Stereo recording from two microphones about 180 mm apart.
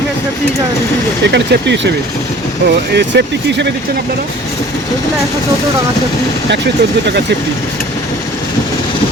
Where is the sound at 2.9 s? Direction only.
75° right (ahead or behind).